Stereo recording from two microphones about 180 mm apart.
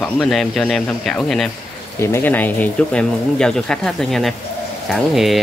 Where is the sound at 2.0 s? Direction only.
15° left (ahead or behind).